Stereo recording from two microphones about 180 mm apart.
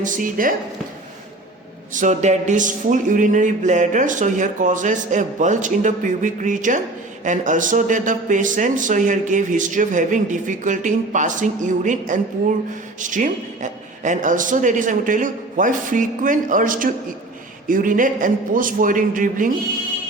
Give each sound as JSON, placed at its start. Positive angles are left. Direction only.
{"t": 0.0, "sound": "speech", "side_deg": -50}
{"t": 1.9, "sound": "speech", "side_deg": -45}